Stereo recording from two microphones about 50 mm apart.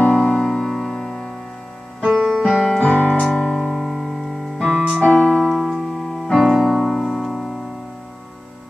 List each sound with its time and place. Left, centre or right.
0.0 s music: left
0.4 s music: centre
2.0 s music: centre
2.8 s music: left; by 4.6 s centre
5.0 s keyboard: centre